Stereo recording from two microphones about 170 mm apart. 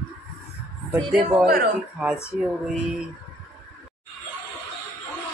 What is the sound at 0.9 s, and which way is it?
Speech, 10° right (ahead or behind).